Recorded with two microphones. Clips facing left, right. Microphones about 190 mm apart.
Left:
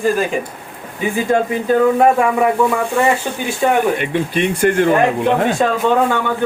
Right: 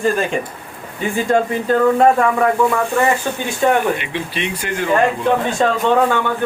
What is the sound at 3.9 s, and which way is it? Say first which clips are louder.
Speech: left 6 dB; 50° left (ahead or behind).